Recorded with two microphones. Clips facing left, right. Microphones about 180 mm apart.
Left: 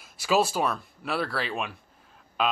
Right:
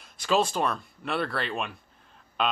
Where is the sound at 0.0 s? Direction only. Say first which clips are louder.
Left 1 dB; 5° left (ahead or behind).